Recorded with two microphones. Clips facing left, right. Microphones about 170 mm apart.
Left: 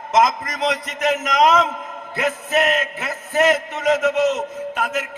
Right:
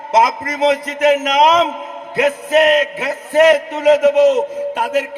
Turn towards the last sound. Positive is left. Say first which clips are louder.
# right 6 dB
turn(degrees=-30)  # may be behind; listen again after turning